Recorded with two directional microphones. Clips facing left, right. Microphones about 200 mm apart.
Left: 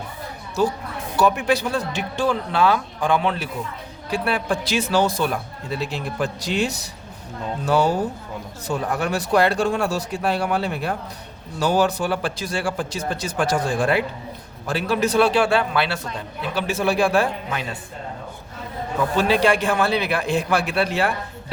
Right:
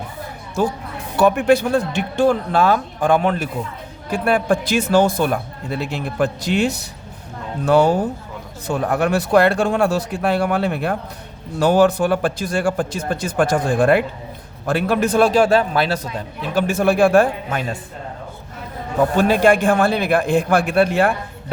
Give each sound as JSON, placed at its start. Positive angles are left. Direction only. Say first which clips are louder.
{"t": 1.1, "sound": "speech", "louder": "right 5 dB", "side_deg": -55}
{"t": 19.1, "sound": "speech", "louder": "right 3 dB", "side_deg": -50}